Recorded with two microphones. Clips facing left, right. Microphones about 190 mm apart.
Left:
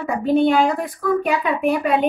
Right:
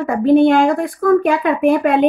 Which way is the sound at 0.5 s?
50° right (ahead or behind).